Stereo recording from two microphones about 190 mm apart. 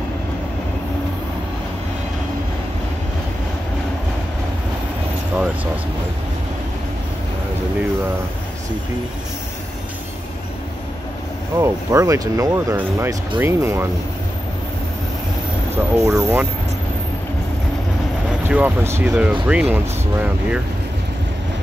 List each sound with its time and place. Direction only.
11.5 s speech: 15° right (ahead or behind)
16.0 s speech: 15° right (ahead or behind)
18.5 s speech: 10° right (ahead or behind)